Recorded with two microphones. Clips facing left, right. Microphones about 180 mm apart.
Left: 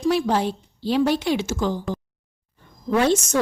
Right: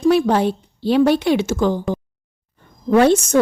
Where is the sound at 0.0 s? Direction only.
60° right (ahead or behind).